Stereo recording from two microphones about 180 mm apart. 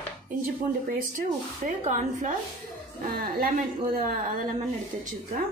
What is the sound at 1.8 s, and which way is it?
Speech, 45° right (ahead or behind).